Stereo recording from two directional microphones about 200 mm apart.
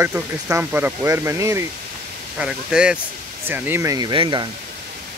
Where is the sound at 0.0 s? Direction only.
10° right (ahead or behind).